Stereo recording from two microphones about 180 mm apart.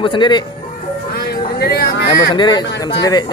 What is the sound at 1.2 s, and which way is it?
Music, 60° left (ahead or behind).